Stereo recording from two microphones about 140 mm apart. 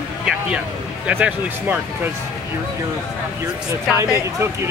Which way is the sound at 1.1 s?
10° right (ahead or behind).